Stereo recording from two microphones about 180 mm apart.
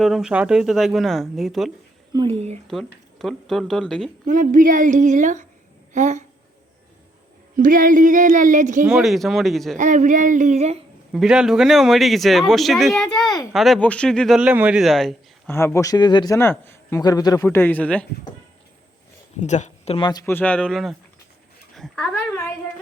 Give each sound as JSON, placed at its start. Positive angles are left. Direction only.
{"t": 0.0, "sound": "speech", "side_deg": 0}
{"t": 2.1, "sound": "speech", "side_deg": -35}
{"t": 3.2, "sound": "speech", "side_deg": 0}
{"t": 4.3, "sound": "speech", "side_deg": -50}
{"t": 7.5, "sound": "speech", "side_deg": -50}
{"t": 8.9, "sound": "speech", "side_deg": 0}
{"t": 9.7, "sound": "speech", "side_deg": -45}
{"t": 11.1, "sound": "speech", "side_deg": -5}
{"t": 15.5, "sound": "speech", "side_deg": 15}
{"t": 19.4, "sound": "speech", "side_deg": 40}
{"t": 20.1, "sound": "speech", "side_deg": 20}
{"t": 20.3, "sound": "speech", "side_deg": 10}